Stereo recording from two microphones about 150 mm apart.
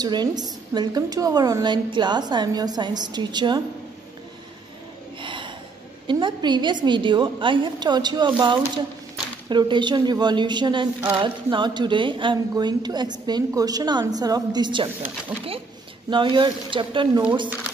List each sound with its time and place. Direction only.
0.0 s a woman's voice: 30° right (ahead or behind)
5.2 s gasp: 35° right (ahead or behind)
6.0 s a woman's voice: 30° right (ahead or behind)
11.0 s a sound: 15° right (ahead or behind)
11.2 s a woman's voice: 30° right (ahead or behind)
16.1 s a woman's voice: 35° right (ahead or behind)